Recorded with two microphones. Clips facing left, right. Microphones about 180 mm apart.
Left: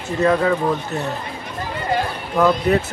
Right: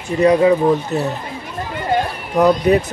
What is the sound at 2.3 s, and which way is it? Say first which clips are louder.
Speech: right 3 dB; 20° right (ahead or behind).